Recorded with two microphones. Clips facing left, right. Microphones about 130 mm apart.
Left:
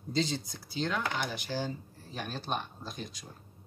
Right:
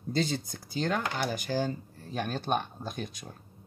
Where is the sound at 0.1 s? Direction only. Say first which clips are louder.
Right 2 dB; 55° right (ahead or behind).